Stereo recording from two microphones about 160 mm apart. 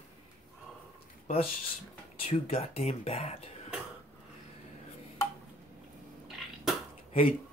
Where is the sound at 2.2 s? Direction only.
40° left (ahead or behind).